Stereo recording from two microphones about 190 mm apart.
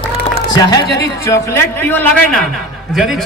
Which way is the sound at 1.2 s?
15° left (ahead or behind).